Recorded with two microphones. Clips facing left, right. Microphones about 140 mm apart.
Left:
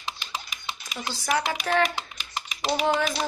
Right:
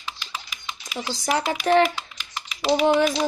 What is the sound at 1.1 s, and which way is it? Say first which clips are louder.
Speech: right 2 dB; 25° right (ahead or behind).